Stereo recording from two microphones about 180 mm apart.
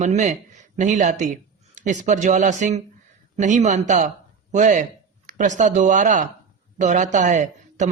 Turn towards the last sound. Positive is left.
turn(degrees=-45)  # may be behind; listen again after turning